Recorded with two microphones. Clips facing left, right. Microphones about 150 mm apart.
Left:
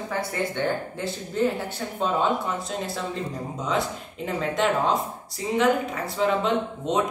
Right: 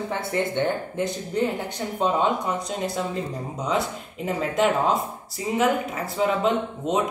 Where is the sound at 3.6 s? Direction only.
Centre (ahead or behind).